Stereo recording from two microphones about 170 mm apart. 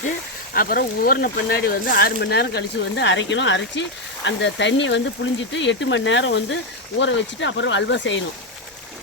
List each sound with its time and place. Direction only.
0.5 s speech: 60° left (ahead or behind); by 8.2 s 90° left